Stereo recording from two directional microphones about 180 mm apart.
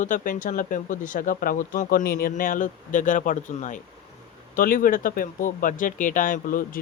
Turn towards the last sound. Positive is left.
turn(degrees=50)  # may be behind; listen again after turning